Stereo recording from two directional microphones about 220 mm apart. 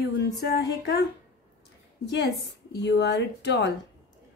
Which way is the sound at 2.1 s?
50° left (ahead or behind).